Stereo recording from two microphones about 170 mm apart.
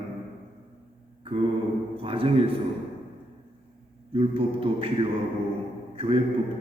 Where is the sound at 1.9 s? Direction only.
35° right (ahead or behind).